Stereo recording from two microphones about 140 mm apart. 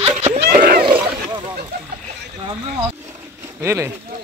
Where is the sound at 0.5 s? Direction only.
90° right.